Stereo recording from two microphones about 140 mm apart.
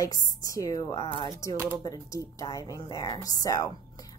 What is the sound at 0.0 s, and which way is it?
A woman's voice, 25° left (ahead or behind).